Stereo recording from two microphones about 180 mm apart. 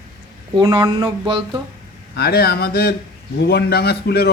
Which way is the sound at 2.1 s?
60° left (ahead or behind).